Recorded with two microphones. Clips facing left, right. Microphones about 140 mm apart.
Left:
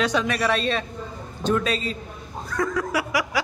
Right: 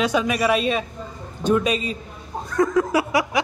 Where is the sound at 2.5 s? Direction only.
20° right (ahead or behind).